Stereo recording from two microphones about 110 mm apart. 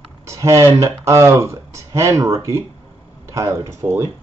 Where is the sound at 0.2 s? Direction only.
30° right (ahead or behind).